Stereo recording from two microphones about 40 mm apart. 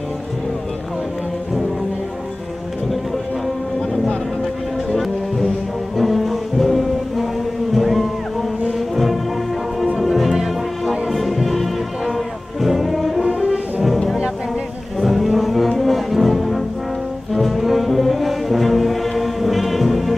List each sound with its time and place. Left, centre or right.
4.9 s music: centre
10.3 s music: centre
11.1 s music: centre
13.4 s music: right
15.0 s music: centre
17.3 s brass instrument: centre